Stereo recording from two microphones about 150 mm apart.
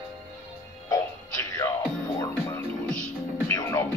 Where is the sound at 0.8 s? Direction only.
20° left (ahead or behind).